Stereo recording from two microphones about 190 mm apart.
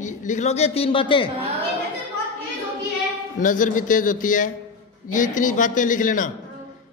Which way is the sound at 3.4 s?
45° left (ahead or behind).